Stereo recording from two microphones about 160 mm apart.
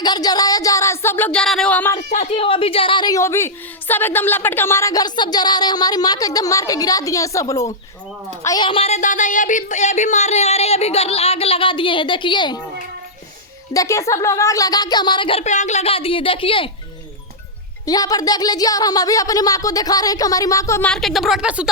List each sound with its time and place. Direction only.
0.0 s speech: 25° left (ahead or behind); by 1.9 s 5° left (ahead or behind)
2.1 s a woman's voice: 40° left (ahead or behind)
9.0 s speech: 50° left (ahead or behind); by 12.5 s 30° left (ahead or behind)
13.7 s a woman's voice: 20° left (ahead or behind); by 16.6 s 35° left (ahead or behind)
17.8 s a woman's voice: 25° left (ahead or behind)
20.9 s speech: centre (ahead or behind)